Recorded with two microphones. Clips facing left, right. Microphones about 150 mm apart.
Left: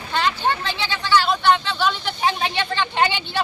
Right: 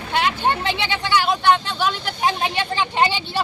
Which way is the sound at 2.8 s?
5° right (ahead or behind).